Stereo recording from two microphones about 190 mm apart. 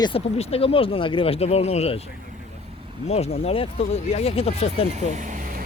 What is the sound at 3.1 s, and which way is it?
Speech, 35° left (ahead or behind).